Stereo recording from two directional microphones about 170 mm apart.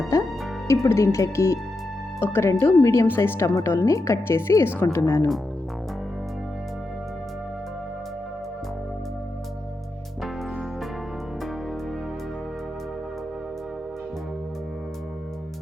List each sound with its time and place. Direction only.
0.7 s speech: 15° left (ahead or behind)